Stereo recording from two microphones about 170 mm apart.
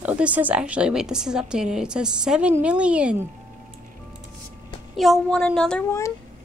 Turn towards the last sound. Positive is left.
turn(degrees=15)  # may be behind; listen again after turning